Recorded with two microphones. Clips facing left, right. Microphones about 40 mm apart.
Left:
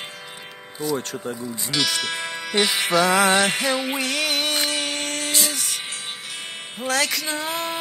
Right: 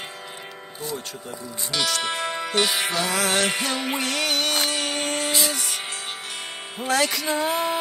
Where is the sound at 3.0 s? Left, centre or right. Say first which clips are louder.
Left 6 dB; left.